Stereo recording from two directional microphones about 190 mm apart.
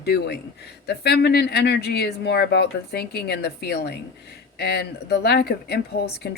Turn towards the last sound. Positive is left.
turn(degrees=55)  # may be behind; listen again after turning